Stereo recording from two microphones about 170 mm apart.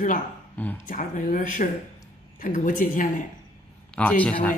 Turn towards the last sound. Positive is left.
turn(degrees=10)  # may be behind; listen again after turning